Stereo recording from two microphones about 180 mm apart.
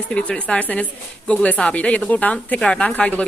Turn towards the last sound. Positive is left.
turn(degrees=5)  # may be behind; listen again after turning